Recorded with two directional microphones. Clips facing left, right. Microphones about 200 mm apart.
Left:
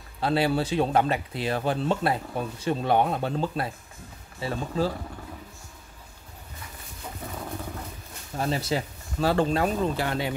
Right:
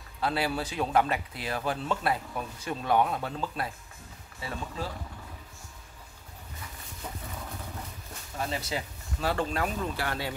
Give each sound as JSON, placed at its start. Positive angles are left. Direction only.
{"t": 0.2, "sound": "speech", "side_deg": 30}
{"t": 8.4, "sound": "speech", "side_deg": 35}